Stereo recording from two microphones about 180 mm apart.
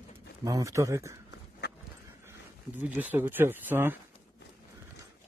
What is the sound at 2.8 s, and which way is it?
Speech, 10° right (ahead or behind).